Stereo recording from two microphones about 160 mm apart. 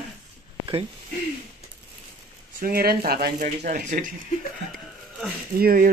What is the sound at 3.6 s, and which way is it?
Speech, 55° right (ahead or behind).